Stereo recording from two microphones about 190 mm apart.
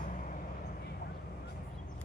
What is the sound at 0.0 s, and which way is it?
Vehicle, 40° left (ahead or behind).